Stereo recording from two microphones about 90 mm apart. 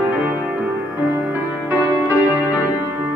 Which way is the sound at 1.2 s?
20° right (ahead or behind).